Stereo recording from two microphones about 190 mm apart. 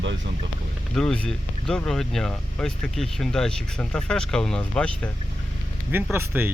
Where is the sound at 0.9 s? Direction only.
5° left (ahead or behind).